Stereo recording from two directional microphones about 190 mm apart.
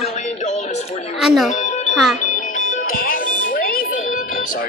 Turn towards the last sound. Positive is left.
turn(degrees=50)  # may be behind; listen again after turning